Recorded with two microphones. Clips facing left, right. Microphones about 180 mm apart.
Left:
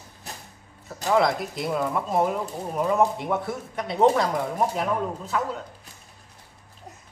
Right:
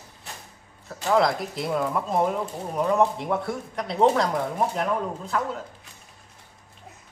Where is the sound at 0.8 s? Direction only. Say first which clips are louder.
Even; centre (ahead or behind).